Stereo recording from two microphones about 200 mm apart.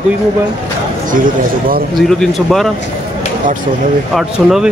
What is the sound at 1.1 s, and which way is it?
Speech, 40° right (ahead or behind).